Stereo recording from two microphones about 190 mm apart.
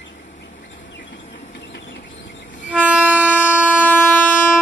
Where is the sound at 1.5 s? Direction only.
65° left (ahead or behind).